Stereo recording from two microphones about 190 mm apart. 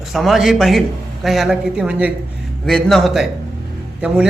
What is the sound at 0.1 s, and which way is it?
A man's voice, centre (ahead or behind).